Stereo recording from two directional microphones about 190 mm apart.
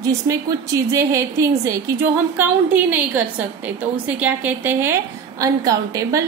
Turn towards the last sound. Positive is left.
turn(degrees=-15)  # may be behind; listen again after turning